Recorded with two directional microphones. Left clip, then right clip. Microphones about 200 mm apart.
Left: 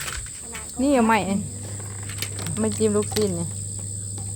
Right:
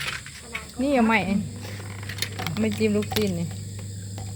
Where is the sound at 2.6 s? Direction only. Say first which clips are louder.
Left 2 dB; 10° left (ahead or behind).